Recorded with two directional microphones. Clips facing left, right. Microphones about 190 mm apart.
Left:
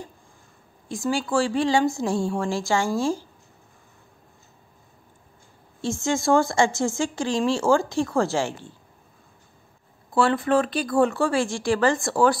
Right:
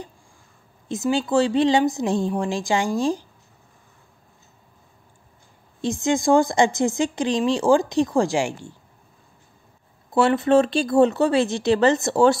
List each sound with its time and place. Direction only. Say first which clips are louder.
0.8 s speech: right 3 dB; 20° right (ahead or behind)
5.8 s speech: right 3 dB; 15° right (ahead or behind)
10.1 s speech: right 4 dB; 20° right (ahead or behind)